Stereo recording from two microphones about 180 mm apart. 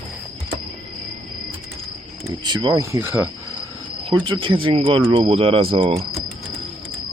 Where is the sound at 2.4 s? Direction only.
25° right (ahead or behind).